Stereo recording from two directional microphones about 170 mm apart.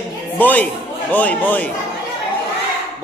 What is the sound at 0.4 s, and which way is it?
A man's voice, 10° left (ahead or behind).